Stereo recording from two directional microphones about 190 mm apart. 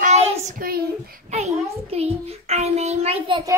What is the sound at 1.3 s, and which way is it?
A child's voice, 35° right (ahead or behind).